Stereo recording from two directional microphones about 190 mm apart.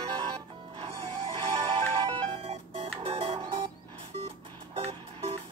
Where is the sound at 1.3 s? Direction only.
25° right (ahead or behind).